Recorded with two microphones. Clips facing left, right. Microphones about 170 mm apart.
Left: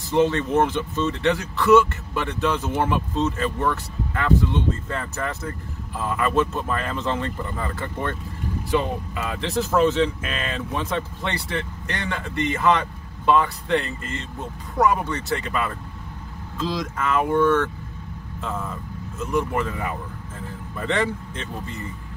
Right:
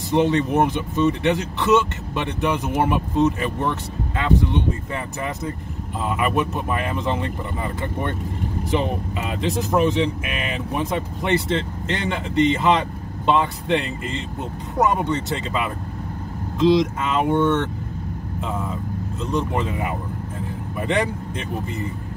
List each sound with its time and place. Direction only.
0.1 s speech: 15° right (ahead or behind)